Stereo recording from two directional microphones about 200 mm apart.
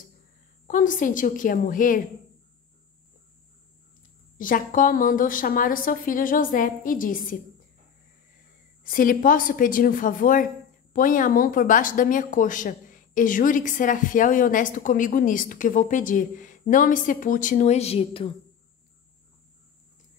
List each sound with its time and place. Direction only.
0.7 s speech: 40° left (ahead or behind)
4.4 s a woman's voice: 40° left (ahead or behind)
8.8 s a woman's voice: 45° left (ahead or behind); by 18.3 s 30° left (ahead or behind)